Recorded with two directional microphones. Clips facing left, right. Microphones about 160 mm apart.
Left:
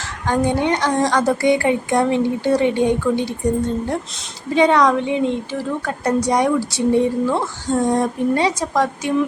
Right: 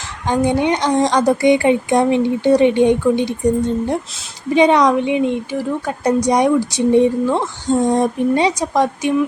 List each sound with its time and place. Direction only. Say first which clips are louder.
0.3 s a woman's voice: right 2 dB; 15° right (ahead or behind)
4.4 s a woman's voice: right 2 dB; 20° right (ahead or behind)